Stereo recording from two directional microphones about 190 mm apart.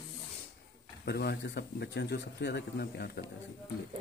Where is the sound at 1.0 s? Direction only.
60° left (ahead or behind).